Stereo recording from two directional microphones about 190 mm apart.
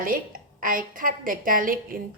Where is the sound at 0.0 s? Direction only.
45° right (ahead or behind).